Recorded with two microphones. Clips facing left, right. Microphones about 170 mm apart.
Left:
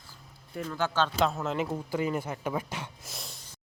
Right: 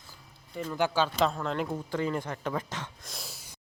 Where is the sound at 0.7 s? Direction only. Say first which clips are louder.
Right 1 dB; 10° right (ahead or behind).